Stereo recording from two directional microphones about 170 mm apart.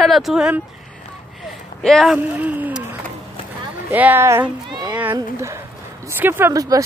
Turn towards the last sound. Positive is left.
turn(degrees=-20)  # may be behind; listen again after turning